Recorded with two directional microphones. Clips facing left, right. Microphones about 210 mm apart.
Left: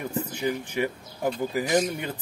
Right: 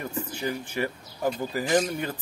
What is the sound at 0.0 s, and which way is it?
Speech, 15° left (ahead or behind).